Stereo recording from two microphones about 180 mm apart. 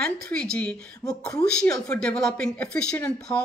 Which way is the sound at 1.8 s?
5° left (ahead or behind).